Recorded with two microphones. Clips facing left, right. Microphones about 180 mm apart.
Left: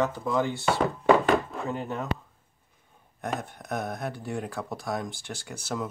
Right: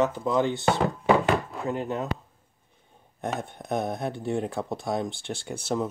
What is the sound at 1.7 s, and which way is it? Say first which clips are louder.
Speech: right 5 dB; 15° right (ahead or behind).